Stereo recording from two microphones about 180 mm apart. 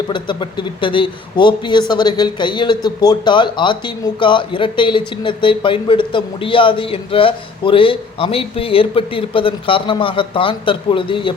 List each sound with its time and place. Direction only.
0.1 s speech: 25° left (ahead or behind)